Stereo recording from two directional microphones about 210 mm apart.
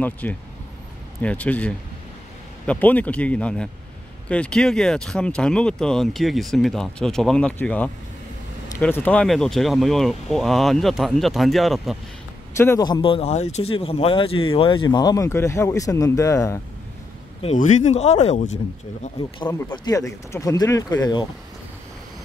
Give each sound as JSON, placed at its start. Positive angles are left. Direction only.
{"t": 0.0, "sound": "speech", "side_deg": 5}
{"t": 12.5, "sound": "speech", "side_deg": 15}
{"t": 17.4, "sound": "speech", "side_deg": 35}
{"t": 19.1, "sound": "speech", "side_deg": 20}